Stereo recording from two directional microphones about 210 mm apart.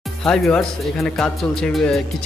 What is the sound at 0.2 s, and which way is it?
Speech, 5° left (ahead or behind).